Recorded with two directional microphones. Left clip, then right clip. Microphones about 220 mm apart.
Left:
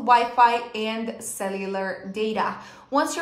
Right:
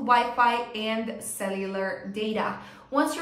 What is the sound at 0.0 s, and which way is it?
A woman's voice, 15° left (ahead or behind).